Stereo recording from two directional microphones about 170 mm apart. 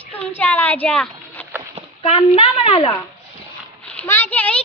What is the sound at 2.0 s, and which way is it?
Speech, 35° left (ahead or behind).